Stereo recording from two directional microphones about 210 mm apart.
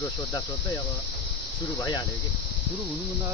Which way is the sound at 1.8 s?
20° left (ahead or behind).